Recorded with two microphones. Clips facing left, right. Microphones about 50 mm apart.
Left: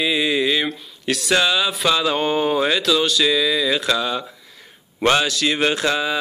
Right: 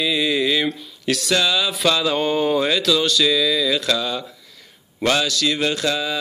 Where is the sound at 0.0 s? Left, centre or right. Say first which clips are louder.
Left 1 dB; centre.